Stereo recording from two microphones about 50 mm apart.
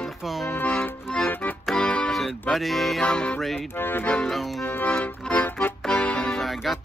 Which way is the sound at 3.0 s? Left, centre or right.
Centre.